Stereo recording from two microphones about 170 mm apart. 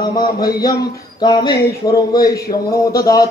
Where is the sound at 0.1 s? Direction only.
25° left (ahead or behind).